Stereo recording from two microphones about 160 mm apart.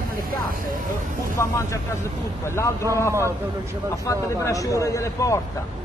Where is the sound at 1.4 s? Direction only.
15° left (ahead or behind).